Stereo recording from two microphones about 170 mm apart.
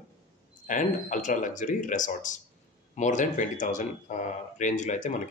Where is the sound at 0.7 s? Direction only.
50° left (ahead or behind).